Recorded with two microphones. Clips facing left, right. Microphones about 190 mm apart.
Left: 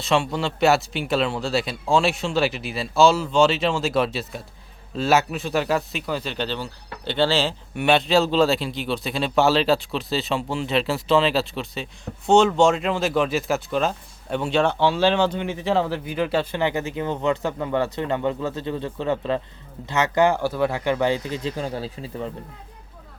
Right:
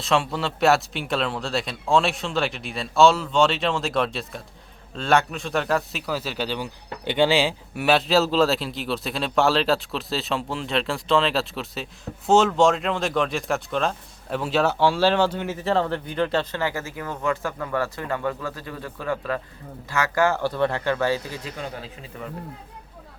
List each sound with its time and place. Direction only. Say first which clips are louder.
0.0 s a man's voice: left 1 dB; centre (ahead or behind); by 21.5 s 20° left (ahead or behind)
21.5 s speech: left 5 dB; 35° left (ahead or behind)